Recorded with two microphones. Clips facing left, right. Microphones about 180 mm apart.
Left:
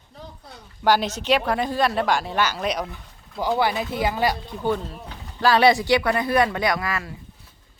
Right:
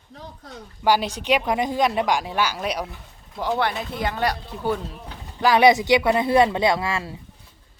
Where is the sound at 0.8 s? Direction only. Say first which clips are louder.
Even; 10° right (ahead or behind).